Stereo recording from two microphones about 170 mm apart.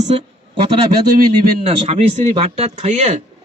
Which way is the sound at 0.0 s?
40° right (ahead or behind).